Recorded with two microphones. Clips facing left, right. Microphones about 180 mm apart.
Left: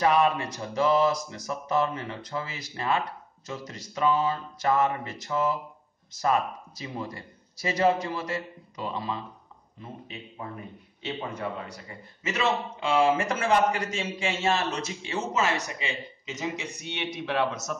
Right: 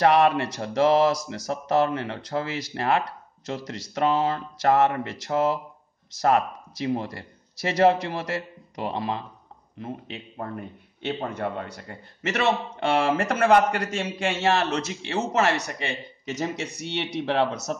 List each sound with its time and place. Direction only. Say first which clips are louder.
0.0 s a man's voice: right 4 dB; 70° right (ahead or behind)